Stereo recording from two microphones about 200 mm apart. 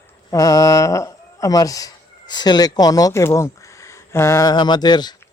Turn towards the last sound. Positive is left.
turn(degrees=20)  # may be behind; listen again after turning